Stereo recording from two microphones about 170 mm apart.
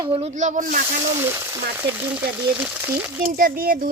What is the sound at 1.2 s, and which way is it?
Speech, 15° right (ahead or behind).